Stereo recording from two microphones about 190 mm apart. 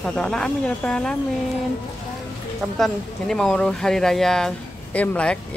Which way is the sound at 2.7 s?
Centre (ahead or behind).